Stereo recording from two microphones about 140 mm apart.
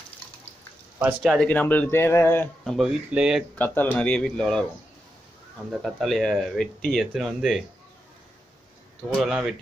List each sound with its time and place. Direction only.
1.2 s speech: centre (ahead or behind)
1.5 s speech: 10° left (ahead or behind)
2.6 s speech: centre (ahead or behind)
3.5 s speech: 15° left (ahead or behind)
5.7 s speech: centre (ahead or behind)
9.1 s speech: centre (ahead or behind)